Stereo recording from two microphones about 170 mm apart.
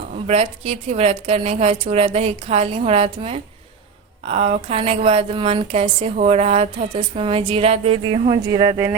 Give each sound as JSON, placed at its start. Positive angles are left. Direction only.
{"t": 0.3, "sound": "a woman's voice", "side_deg": -40}